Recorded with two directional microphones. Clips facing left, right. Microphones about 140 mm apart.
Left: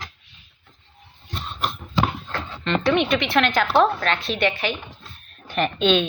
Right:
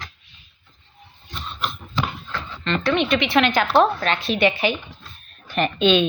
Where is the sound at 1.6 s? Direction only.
45° left (ahead or behind).